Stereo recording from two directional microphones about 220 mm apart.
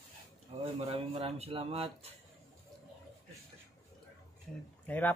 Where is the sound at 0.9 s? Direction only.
30° right (ahead or behind).